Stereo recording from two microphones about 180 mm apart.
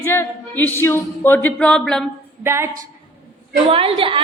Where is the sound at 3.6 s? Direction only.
30° right (ahead or behind).